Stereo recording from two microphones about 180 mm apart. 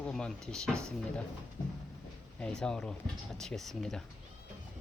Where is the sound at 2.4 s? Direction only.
5° left (ahead or behind).